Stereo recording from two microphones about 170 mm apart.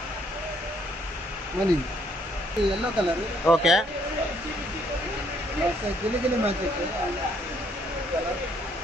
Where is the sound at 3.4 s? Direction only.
5° right (ahead or behind).